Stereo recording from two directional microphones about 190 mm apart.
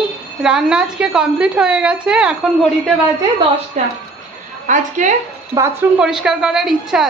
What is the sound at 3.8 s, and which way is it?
A woman's voice, 40° right (ahead or behind).